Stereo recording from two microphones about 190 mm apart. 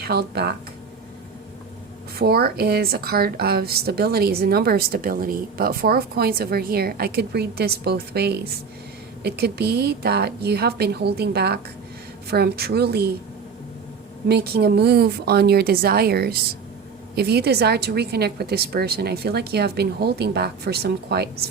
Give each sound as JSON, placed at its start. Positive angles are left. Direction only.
{"t": 0.0, "sound": "a woman's voice", "side_deg": -55}
{"t": 2.1, "sound": "a woman's voice", "side_deg": -55}
{"t": 14.3, "sound": "a woman's voice", "side_deg": -55}